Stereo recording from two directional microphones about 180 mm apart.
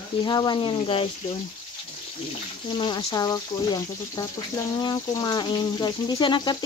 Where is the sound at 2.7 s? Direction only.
25° left (ahead or behind).